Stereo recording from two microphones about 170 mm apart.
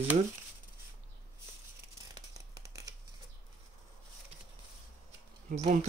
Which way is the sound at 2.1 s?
20° right (ahead or behind).